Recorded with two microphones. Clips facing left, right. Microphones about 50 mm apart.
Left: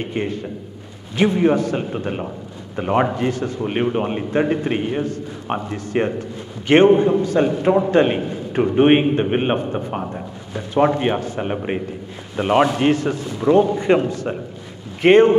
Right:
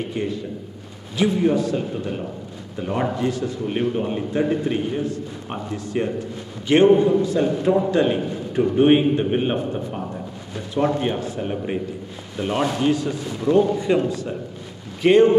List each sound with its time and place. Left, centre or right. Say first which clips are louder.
0.0 s a man's voice: left 2 dB; left
13.4 s a man's voice: left 3 dB; left